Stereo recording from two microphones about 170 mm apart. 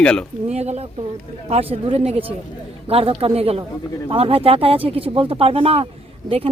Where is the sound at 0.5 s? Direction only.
40° right (ahead or behind).